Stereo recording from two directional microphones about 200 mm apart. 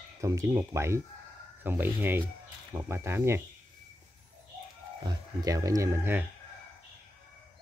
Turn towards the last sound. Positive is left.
turn(degrees=-10)  # may be behind; listen again after turning